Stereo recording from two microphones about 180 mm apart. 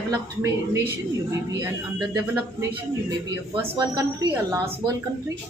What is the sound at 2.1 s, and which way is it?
Speech, 15° right (ahead or behind).